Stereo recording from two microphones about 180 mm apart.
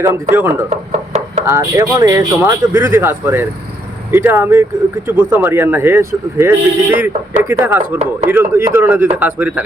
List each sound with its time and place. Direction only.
0.1 s speech: 10° right (ahead or behind)
0.7 s a sound: 35° right (ahead or behind)
1.5 s speech: 15° right (ahead or behind)